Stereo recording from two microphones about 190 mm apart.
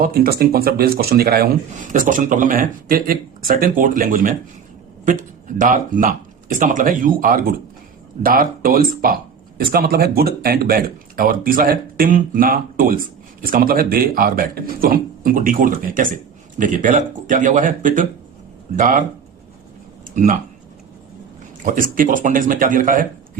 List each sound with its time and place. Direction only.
0.0 s speech: 50° right (ahead or behind)
20.1 s speech: 45° right (ahead or behind)
21.6 s speech: 45° right (ahead or behind)